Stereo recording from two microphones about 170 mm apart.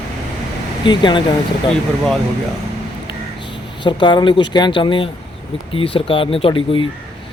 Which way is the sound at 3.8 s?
30° left (ahead or behind).